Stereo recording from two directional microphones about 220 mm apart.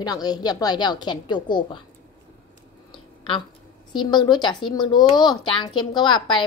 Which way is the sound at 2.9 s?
25° left (ahead or behind).